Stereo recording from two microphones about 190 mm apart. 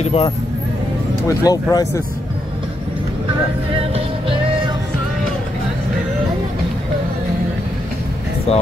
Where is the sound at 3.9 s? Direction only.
30° right (ahead or behind).